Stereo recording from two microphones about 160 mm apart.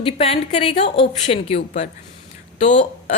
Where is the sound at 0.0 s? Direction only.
40° left (ahead or behind).